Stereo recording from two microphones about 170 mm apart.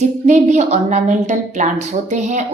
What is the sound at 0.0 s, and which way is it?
A woman's voice, 40° right (ahead or behind).